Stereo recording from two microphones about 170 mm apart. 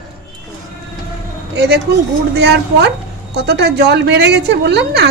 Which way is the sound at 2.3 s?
90° right.